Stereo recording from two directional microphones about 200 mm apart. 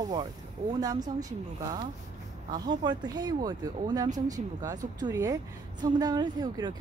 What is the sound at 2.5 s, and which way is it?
Speech, 20° right (ahead or behind).